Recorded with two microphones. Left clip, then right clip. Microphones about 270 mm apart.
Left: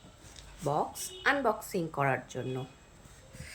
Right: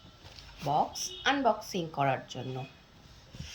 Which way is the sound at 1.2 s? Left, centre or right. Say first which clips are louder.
Right 1 dB; centre.